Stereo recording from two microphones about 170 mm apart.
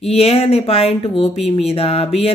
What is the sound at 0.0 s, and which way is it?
Speech, 35° left (ahead or behind).